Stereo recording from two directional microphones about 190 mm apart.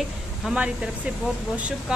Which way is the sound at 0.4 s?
5° right (ahead or behind).